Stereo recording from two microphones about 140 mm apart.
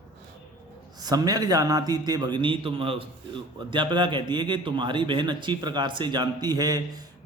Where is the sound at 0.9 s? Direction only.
30° right (ahead or behind).